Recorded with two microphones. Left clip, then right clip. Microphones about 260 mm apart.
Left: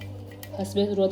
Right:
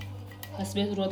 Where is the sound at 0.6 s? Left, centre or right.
Right.